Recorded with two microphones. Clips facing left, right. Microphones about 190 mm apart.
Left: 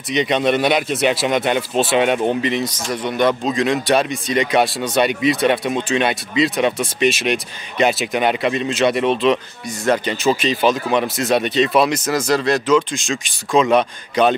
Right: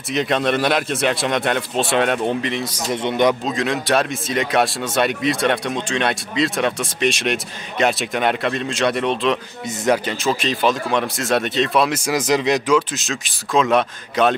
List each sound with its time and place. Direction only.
0.1 s speech: centre (ahead or behind)
2.9 s a man's voice: 25° right (ahead or behind)
3.4 s speech: centre (ahead or behind)
12.0 s speech: 15° right (ahead or behind)